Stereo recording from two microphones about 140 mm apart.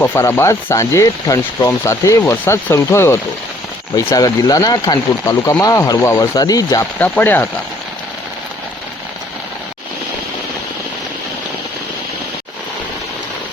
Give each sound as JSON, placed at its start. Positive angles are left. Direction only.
{"t": 0.0, "sound": "speech", "side_deg": 20}
{"t": 7.0, "sound": "speech", "side_deg": 15}